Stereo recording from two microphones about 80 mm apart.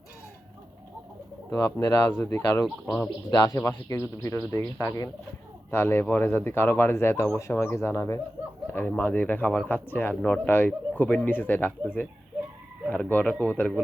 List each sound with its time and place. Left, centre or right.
1.5 s speech: left
2.0 s speech: left
2.4 s speech: left
5.7 s speech: left
8.7 s speech: left